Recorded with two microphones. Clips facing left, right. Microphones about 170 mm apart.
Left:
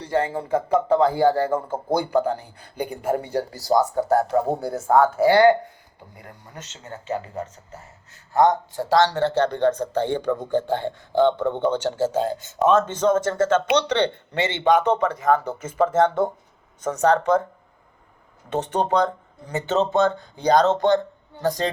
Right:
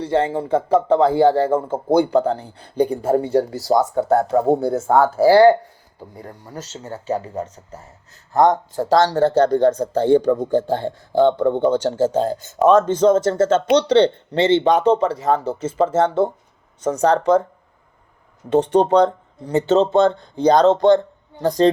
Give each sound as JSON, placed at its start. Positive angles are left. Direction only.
{"t": 0.0, "sound": "speech", "side_deg": -25}
{"t": 18.5, "sound": "speech", "side_deg": -30}